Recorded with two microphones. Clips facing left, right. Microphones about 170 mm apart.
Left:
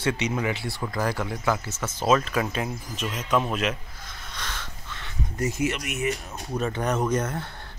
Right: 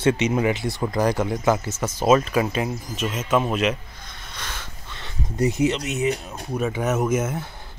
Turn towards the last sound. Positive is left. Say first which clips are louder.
# right 3 dB
turn(degrees=-5)  # may be behind; listen again after turning